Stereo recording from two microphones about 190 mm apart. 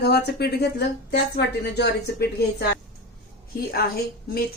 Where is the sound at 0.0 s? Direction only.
60° left (ahead or behind).